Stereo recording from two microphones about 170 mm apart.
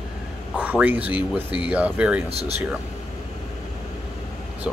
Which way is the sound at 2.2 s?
35° right (ahead or behind).